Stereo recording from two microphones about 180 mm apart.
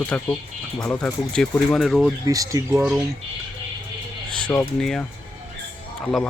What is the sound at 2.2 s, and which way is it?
Speech, 20° right (ahead or behind).